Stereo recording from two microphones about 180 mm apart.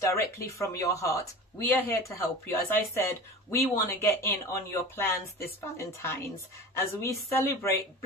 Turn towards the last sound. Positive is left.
turn(degrees=15)  # may be behind; listen again after turning